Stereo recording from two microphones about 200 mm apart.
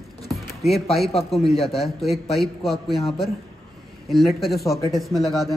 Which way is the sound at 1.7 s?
Centre (ahead or behind).